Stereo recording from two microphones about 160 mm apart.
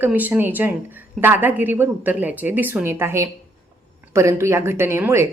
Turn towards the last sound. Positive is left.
turn(degrees=-15)  # may be behind; listen again after turning